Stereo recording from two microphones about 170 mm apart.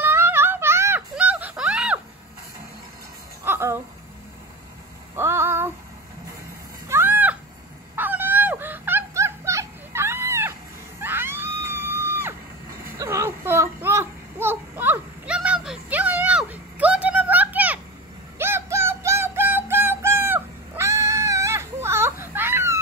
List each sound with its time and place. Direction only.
0.0 s music: 15° right (ahead or behind)
3.4 s music: 15° right (ahead or behind)
5.1 s child singing: 15° right (ahead or behind)
6.9 s a sound: 10° right (ahead or behind)
7.9 s music: 10° right (ahead or behind)
11.0 s screaming: 10° right (ahead or behind)
12.9 s a sound: 15° right (ahead or behind)
18.4 s synthetic singing: 15° right (ahead or behind)